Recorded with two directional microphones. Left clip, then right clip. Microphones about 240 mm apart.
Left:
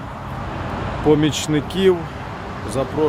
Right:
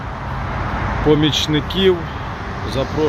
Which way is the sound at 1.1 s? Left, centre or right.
Centre.